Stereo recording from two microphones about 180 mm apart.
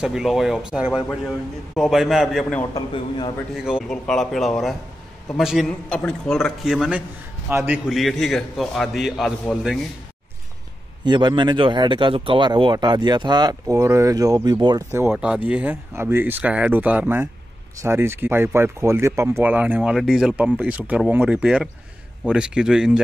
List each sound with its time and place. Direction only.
0.0 s a man's voice: 5° right (ahead or behind)
2.7 s a man's voice: 25° left (ahead or behind)
3.7 s a man's voice: 5° left (ahead or behind)
11.1 s speech: 25° right (ahead or behind)
14.9 s a man's voice: 10° right (ahead or behind)